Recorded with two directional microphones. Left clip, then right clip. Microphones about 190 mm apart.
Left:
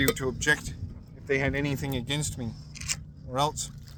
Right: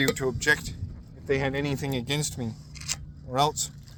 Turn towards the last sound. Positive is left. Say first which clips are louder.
# right 3 dB
turn(degrees=-30)  # may be behind; listen again after turning